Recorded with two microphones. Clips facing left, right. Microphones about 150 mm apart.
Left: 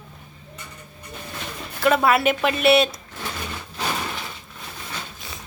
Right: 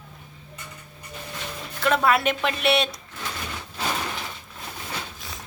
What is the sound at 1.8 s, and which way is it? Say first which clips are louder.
Speech: left 3 dB; 5° left (ahead or behind).